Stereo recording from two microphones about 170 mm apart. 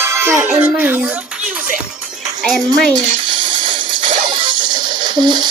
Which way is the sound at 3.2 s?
30° right (ahead or behind).